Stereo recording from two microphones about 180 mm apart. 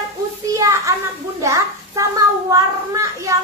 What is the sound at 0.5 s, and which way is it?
A child's voice, 15° right (ahead or behind).